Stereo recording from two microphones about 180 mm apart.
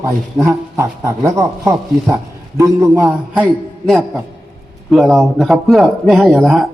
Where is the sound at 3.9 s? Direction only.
Centre (ahead or behind).